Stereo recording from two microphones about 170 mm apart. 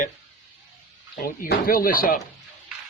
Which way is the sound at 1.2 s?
60° left (ahead or behind).